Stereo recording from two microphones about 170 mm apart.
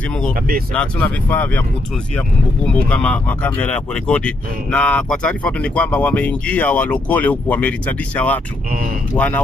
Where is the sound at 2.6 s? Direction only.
5° left (ahead or behind).